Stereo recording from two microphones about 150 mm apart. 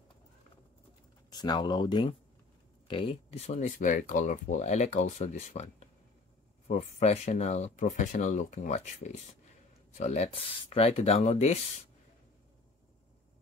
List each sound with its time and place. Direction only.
1.3 s speech: 30° left (ahead or behind)
2.9 s speech: 40° left (ahead or behind)